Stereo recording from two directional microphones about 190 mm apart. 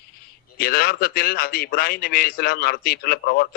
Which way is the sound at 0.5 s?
55° left (ahead or behind).